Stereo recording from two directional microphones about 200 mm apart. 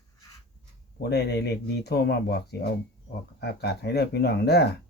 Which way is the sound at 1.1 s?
55° left (ahead or behind).